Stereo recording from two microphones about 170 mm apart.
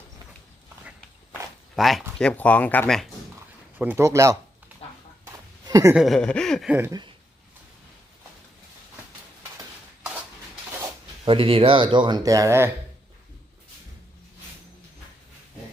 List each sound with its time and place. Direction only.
1.7 s speech: centre (ahead or behind)
3.8 s speech: 10° right (ahead or behind)
5.2 s a sound: 20° right (ahead or behind)
5.9 s speech: centre (ahead or behind)
6.7 s speech: 10° right (ahead or behind)
11.3 s speech: 30° right (ahead or behind); by 12.7 s 15° right (ahead or behind)